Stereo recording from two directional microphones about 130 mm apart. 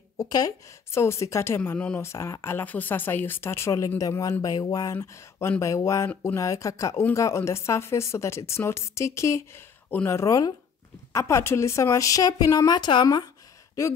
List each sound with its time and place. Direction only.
0.2 s speech: 30° left (ahead or behind)